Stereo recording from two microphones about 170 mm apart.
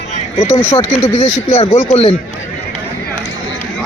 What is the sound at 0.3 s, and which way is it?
Speech, 35° left (ahead or behind).